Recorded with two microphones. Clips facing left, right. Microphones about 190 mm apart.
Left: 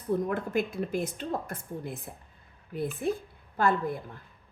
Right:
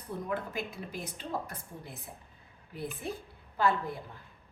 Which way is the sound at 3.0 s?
55° left (ahead or behind).